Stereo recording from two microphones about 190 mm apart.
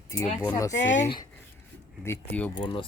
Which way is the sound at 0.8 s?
75° left (ahead or behind).